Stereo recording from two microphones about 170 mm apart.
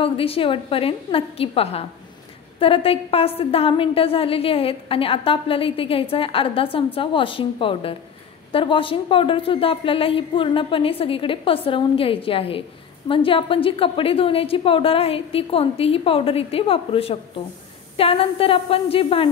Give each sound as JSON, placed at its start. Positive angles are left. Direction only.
{"t": 0.0, "sound": "a woman's voice", "side_deg": 35}